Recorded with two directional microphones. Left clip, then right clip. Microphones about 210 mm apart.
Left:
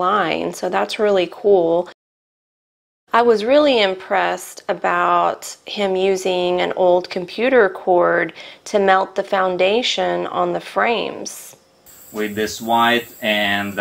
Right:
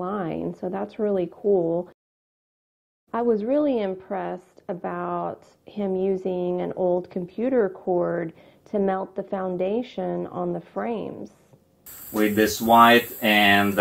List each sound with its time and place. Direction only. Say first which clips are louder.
0.0 s speech: left 11 dB; 10° left (ahead or behind)
1.4 s speech: left 7 dB; 40° left (ahead or behind)
3.1 s speech: left 9 dB; 10° left (ahead or behind)
7.7 s speech: left 9 dB; 25° left (ahead or behind); by 13.7 s centre (ahead or behind)